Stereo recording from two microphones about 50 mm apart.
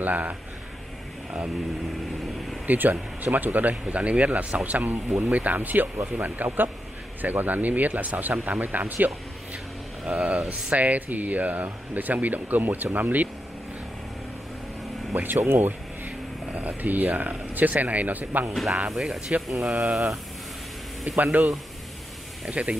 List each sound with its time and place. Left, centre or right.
0.0 s speech: right
2.6 s speech: right
10.2 s speech: right
15.1 s speech: right
16.5 s speech: right
18.5 s speech: centre
18.9 s speech: centre
21.2 s speech: right
22.6 s speech: right